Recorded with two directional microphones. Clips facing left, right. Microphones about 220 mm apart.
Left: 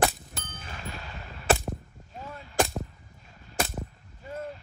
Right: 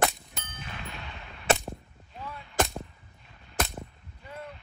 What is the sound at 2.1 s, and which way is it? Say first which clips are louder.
Artillery fire: left 1 dB; 45° left (ahead or behind).